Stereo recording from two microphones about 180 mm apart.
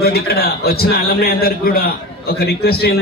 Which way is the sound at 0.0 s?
60° left (ahead or behind).